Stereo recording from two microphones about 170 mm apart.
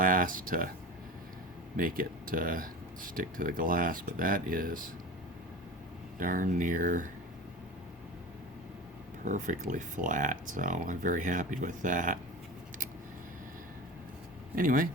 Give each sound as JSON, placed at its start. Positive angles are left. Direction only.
{"t": 0.0, "sound": "speech", "side_deg": -55}
{"t": 1.7, "sound": "speech", "side_deg": -55}
{"t": 6.1, "sound": "speech", "side_deg": -55}
{"t": 9.2, "sound": "speech", "side_deg": -50}
{"t": 14.5, "sound": "speech", "side_deg": -55}